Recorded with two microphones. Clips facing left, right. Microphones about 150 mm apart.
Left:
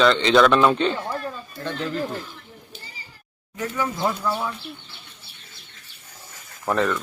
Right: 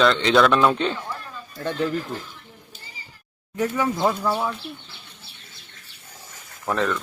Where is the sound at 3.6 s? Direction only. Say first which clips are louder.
Right 3 dB; 15° right (ahead or behind).